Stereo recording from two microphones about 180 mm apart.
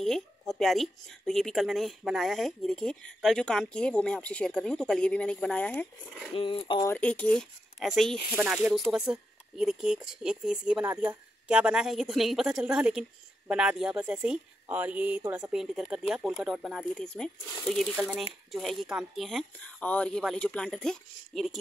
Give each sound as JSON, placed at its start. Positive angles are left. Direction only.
{"t": 0.0, "sound": "speech", "side_deg": 0}
{"t": 6.3, "sound": "speech", "side_deg": 30}
{"t": 6.9, "sound": "speech", "side_deg": 5}